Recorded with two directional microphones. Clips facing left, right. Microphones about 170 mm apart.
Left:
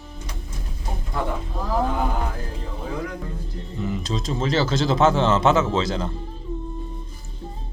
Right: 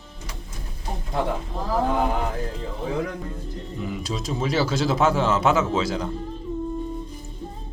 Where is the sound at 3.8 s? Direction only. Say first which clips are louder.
Left 3 dB; 10° right (ahead or behind).